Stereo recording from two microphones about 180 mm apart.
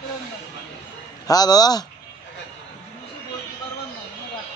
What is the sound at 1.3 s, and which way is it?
Speech, 20° left (ahead or behind).